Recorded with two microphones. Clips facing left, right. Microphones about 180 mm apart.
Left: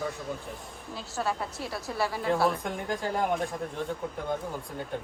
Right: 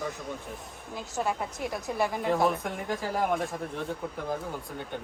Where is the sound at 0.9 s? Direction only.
15° right (ahead or behind).